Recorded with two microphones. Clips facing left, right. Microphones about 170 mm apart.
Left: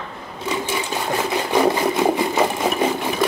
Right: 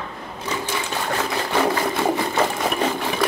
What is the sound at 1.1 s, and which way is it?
Sewing machine, 15° left (ahead or behind).